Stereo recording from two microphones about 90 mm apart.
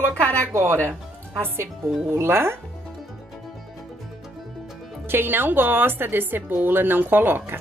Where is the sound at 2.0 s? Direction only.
30° right (ahead or behind).